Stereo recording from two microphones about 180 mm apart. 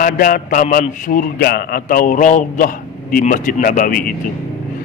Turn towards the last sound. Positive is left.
turn(degrees=55)  # may be behind; listen again after turning